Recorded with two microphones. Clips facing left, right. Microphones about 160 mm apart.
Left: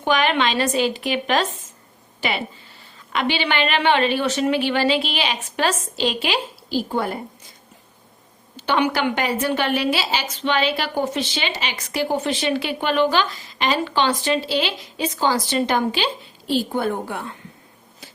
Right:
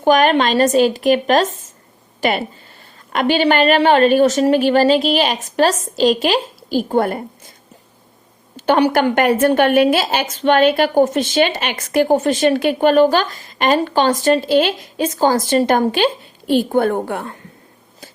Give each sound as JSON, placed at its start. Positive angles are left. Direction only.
{"t": 0.0, "sound": "a woman's voice", "side_deg": -45}
{"t": 3.1, "sound": "a woman's voice", "side_deg": -45}
{"t": 8.5, "sound": "a woman's voice", "side_deg": -45}